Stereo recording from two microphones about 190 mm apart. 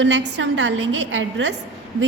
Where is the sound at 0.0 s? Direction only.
70° right (ahead or behind).